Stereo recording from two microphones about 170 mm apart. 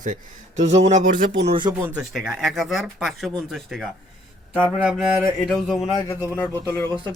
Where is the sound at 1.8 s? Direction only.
5° right (ahead or behind).